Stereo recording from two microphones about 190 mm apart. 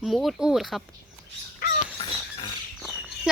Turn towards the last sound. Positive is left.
turn(degrees=-5)  # may be behind; listen again after turning